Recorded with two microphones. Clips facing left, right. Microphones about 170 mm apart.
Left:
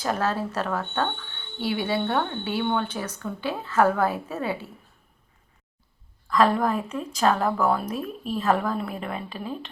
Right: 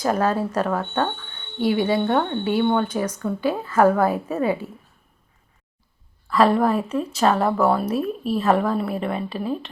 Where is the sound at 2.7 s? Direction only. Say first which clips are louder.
Right 6 dB; 10° right (ahead or behind).